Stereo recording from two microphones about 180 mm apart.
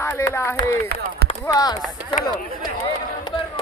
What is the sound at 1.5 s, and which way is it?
Speech, 20° left (ahead or behind).